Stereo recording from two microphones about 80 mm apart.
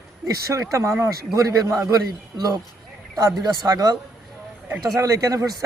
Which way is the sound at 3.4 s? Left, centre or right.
Right.